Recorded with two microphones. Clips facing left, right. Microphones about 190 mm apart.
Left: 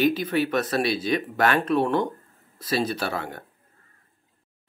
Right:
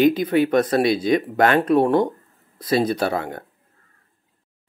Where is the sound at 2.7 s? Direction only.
20° right (ahead or behind).